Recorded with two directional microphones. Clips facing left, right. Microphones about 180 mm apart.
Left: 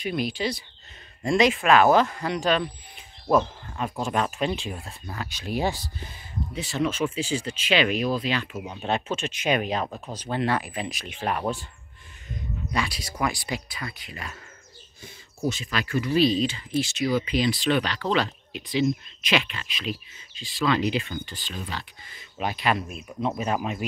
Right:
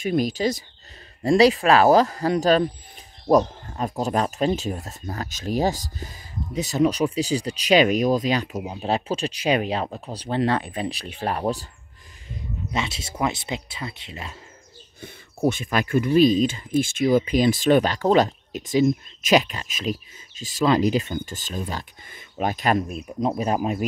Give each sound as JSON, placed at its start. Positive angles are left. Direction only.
{"t": 0.0, "sound": "speech", "side_deg": -45}
{"t": 9.8, "sound": "speech", "side_deg": -20}
{"t": 10.1, "sound": "speech", "side_deg": -30}
{"t": 12.7, "sound": "speech", "side_deg": -25}
{"t": 15.0, "sound": "speech", "side_deg": -60}